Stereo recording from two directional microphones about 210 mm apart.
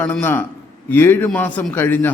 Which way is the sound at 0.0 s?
10° left (ahead or behind).